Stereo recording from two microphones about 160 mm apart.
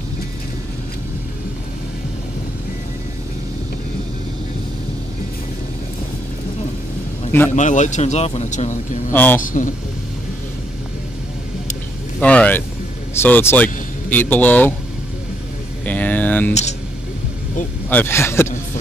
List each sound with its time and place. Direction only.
7.5 s a man's voice: 50° left (ahead or behind)
9.1 s speech: 10° left (ahead or behind)
9.4 s a man's voice: 55° left (ahead or behind)
12.2 s speech: 10° left (ahead or behind)
15.8 s a sound: 10° left (ahead or behind)
17.8 s speech: 15° left (ahead or behind)